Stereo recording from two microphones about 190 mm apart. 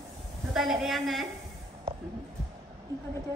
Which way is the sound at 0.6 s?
Centre (ahead or behind).